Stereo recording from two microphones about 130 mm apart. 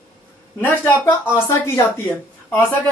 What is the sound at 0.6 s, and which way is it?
Speech, 15° left (ahead or behind).